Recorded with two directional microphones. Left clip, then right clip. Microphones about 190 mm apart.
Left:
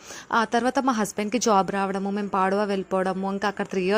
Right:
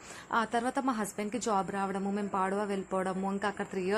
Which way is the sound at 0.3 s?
35° left (ahead or behind).